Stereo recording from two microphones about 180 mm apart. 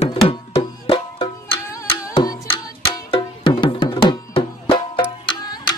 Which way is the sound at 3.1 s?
30° left (ahead or behind).